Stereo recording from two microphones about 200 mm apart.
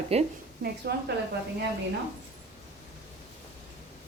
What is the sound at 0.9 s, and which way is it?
Speech, 55° right (ahead or behind).